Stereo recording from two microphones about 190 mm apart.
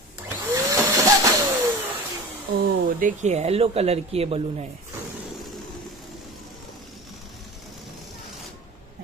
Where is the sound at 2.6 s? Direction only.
50° right (ahead or behind); by 4.7 s 30° right (ahead or behind).